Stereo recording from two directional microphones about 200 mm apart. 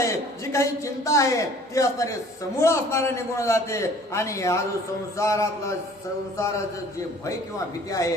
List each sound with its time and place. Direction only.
0.0 s a man's voice: 15° left (ahead or behind)
7.9 s a man's voice: 15° left (ahead or behind)